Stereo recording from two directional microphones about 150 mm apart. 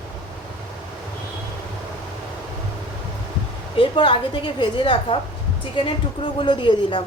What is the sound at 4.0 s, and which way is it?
A woman's voice, 35° left (ahead or behind).